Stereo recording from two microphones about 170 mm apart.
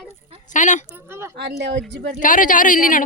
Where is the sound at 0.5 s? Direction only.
45° left (ahead or behind).